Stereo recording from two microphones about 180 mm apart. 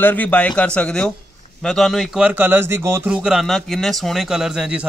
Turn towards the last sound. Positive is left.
turn(degrees=-5)  # may be behind; listen again after turning